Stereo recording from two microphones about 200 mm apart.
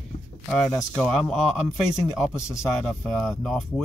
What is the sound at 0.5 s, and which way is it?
Speech, 5° left (ahead or behind).